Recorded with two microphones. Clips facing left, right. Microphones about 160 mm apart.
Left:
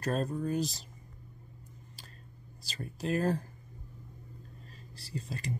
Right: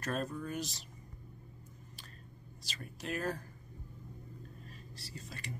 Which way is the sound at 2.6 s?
35° left (ahead or behind).